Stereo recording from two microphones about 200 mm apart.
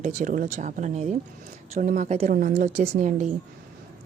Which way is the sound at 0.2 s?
40° right (ahead or behind).